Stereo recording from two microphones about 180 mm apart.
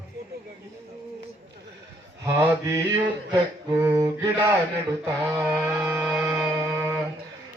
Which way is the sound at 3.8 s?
20° right (ahead or behind).